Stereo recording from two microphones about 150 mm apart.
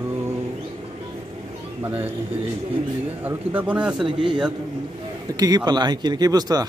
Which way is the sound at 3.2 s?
10° right (ahead or behind).